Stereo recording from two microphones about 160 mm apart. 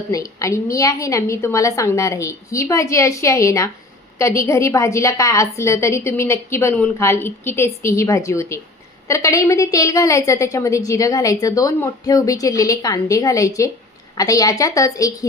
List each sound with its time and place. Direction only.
0.1 s a woman's voice: 20° left (ahead or behind)